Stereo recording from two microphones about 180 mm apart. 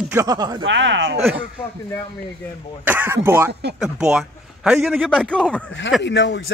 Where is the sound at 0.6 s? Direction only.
90° right.